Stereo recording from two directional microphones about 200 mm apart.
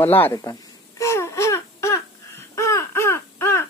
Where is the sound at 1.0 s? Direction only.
15° left (ahead or behind).